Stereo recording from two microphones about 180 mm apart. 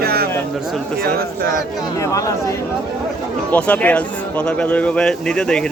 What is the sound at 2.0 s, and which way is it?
Speech, 15° left (ahead or behind).